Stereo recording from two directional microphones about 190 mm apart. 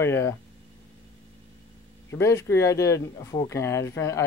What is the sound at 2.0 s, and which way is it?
Speech, 15° left (ahead or behind).